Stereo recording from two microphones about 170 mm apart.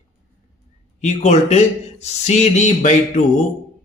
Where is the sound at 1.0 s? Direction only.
45° left (ahead or behind).